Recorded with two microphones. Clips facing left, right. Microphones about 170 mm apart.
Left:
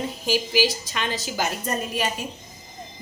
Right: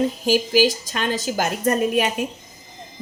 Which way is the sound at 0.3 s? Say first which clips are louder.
Right 4 dB; 45° right (ahead or behind).